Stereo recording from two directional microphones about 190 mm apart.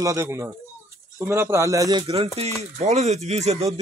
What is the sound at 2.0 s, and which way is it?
Speech, 30° right (ahead or behind).